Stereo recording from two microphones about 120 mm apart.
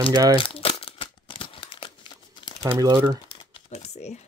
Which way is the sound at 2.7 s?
25° right (ahead or behind).